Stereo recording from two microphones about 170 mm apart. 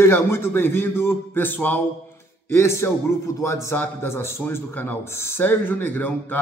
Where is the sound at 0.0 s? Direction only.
15° left (ahead or behind).